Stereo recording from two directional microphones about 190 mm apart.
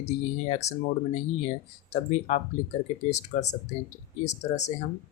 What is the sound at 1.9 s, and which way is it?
Speech, 35° left (ahead or behind).